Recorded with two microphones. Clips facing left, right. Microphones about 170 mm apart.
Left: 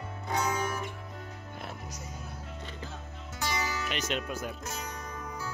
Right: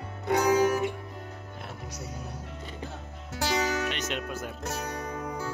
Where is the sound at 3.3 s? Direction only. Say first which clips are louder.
Right 6 dB; 75° right (ahead or behind).